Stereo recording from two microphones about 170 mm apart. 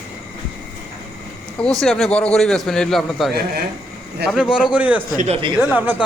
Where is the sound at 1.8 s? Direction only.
Centre (ahead or behind).